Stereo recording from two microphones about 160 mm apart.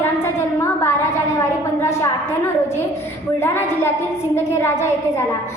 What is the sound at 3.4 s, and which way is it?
A woman's voice, 15° left (ahead or behind).